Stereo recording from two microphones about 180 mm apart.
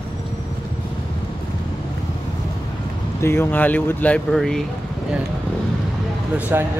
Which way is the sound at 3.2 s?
15° left (ahead or behind).